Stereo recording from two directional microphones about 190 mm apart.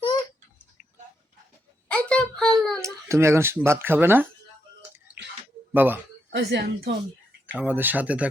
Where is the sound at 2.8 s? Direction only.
15° right (ahead or behind).